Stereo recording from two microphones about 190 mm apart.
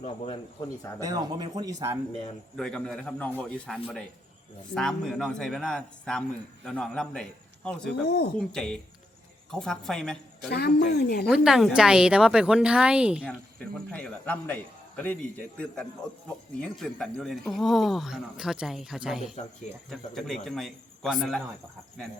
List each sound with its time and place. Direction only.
0.9 s speech: 20° right (ahead or behind)
2.6 s speech: 5° left (ahead or behind)
10.5 s speech: 60° left (ahead or behind)
11.3 s speech: centre (ahead or behind)
13.7 s a man's voice: 5° left (ahead or behind)